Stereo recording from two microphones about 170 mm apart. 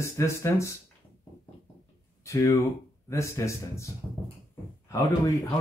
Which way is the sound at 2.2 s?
20° left (ahead or behind).